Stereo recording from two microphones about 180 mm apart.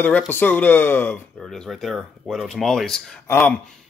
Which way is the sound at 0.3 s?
10° left (ahead or behind).